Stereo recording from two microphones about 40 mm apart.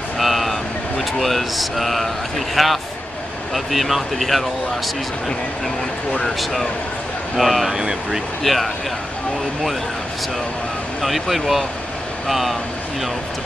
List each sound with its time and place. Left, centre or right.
0.2 s speech: centre
7.3 s speech: centre
7.7 s speech: centre
8.5 s speech: centre
11.0 s speech: centre